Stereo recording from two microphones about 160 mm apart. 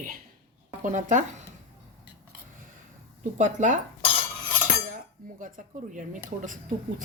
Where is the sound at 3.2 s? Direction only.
50° right (ahead or behind).